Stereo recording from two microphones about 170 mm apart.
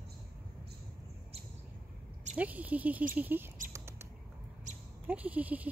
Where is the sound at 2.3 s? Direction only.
10° right (ahead or behind).